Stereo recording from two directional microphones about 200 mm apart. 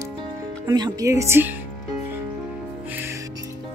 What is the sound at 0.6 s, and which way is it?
Speech, 20° right (ahead or behind).